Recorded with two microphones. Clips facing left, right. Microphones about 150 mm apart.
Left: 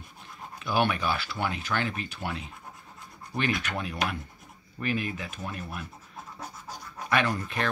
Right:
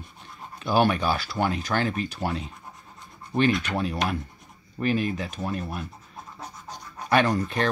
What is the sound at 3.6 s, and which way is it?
Speech, 35° right (ahead or behind).